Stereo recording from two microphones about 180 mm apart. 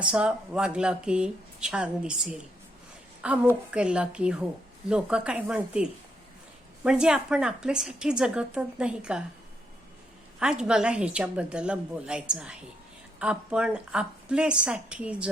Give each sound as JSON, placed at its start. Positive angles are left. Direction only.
{"t": 0.0, "sound": "a woman's voice", "side_deg": -5}
{"t": 10.4, "sound": "a woman's voice", "side_deg": -5}